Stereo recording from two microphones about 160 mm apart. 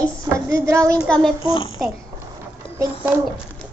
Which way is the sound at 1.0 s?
5° left (ahead or behind).